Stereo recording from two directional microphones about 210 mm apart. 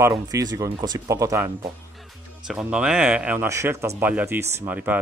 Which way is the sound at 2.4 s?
5° right (ahead or behind).